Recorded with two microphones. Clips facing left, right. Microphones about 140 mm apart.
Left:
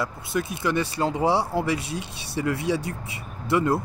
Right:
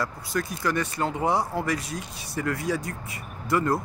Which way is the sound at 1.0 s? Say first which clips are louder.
Left 5 dB; 15° left (ahead or behind).